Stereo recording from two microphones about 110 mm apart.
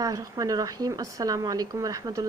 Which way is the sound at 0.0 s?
35° right (ahead or behind).